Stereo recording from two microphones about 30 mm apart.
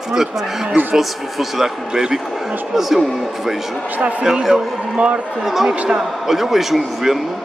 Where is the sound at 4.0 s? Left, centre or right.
Right.